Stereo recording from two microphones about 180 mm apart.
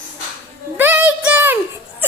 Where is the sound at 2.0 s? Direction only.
10° right (ahead or behind).